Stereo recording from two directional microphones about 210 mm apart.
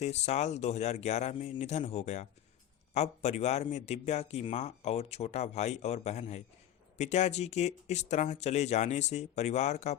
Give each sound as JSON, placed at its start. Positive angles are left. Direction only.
{"t": 0.0, "sound": "a man's voice", "side_deg": 30}